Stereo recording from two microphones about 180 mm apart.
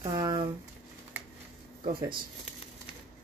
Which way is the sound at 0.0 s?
20° right (ahead or behind).